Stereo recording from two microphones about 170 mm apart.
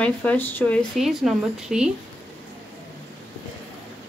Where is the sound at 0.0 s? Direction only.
10° left (ahead or behind).